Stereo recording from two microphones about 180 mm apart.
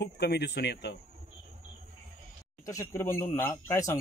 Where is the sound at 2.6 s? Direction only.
15° left (ahead or behind).